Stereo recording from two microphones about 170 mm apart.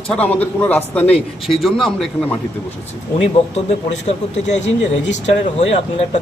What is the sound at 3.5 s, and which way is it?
Speech, 40° left (ahead or behind).